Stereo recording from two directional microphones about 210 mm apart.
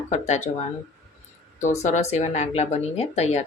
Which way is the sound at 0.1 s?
30° left (ahead or behind).